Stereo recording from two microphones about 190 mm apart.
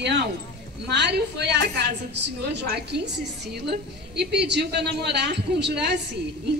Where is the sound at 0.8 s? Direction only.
65° right (ahead or behind).